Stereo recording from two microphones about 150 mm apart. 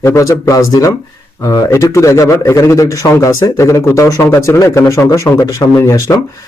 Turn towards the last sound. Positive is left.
turn(degrees=20)  # may be behind; listen again after turning